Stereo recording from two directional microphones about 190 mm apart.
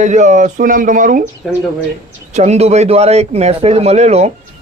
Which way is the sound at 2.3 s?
35° right (ahead or behind).